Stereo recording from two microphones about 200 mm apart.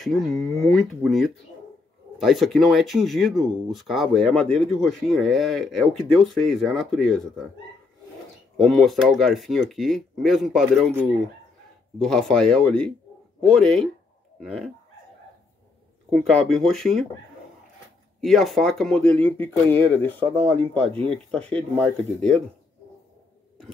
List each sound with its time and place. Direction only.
0.0 s speech: centre (ahead or behind)
8.5 s speech: centre (ahead or behind)
16.1 s speech: centre (ahead or behind)
18.2 s speech: centre (ahead or behind)
20.2 s speech: 25° right (ahead or behind)
21.0 s speech: 5° left (ahead or behind)